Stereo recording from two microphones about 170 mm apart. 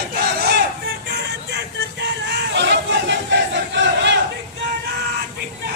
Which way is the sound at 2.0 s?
90° right.